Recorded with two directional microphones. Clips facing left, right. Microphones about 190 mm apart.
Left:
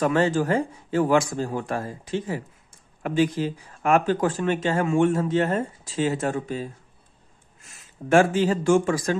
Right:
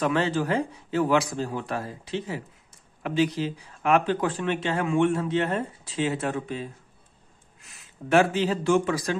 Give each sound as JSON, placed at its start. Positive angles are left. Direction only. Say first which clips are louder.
{"t": 0.0, "sound": "speech", "louder": "left 3 dB", "side_deg": 45}